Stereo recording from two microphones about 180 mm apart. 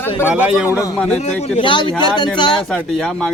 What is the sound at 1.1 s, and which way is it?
Speech, 35° left (ahead or behind).